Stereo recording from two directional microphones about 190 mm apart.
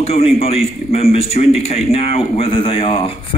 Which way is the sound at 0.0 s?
30° left (ahead or behind).